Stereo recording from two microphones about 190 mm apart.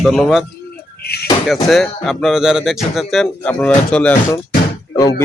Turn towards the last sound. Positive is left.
turn(degrees=20)  # may be behind; listen again after turning